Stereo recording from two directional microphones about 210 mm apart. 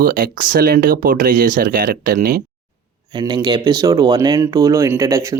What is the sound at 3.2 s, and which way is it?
Speech, 20° right (ahead or behind).